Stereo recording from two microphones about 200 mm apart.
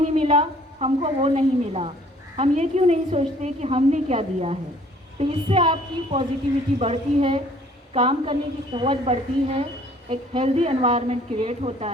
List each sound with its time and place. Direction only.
0.1 s a woman's voice: 35° right (ahead or behind)